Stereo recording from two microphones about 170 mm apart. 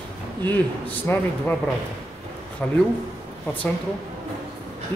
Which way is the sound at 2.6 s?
5° left (ahead or behind).